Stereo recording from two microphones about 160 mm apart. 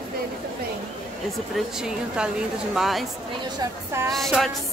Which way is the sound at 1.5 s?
5° right (ahead or behind).